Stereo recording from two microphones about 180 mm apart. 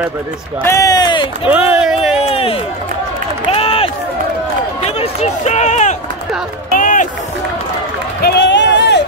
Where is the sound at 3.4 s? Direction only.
30° left (ahead or behind).